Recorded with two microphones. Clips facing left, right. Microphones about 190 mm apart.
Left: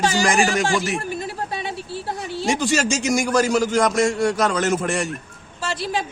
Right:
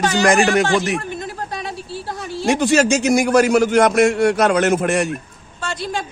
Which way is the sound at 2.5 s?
60° right (ahead or behind).